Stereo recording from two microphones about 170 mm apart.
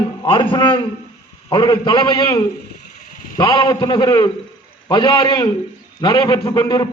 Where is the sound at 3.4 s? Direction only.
25° left (ahead or behind).